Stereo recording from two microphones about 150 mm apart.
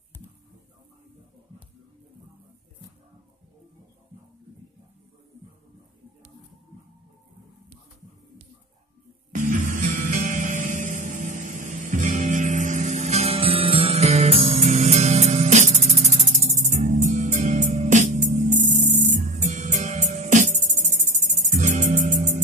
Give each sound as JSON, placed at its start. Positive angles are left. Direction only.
{"t": 9.3, "sound": "music", "side_deg": -60}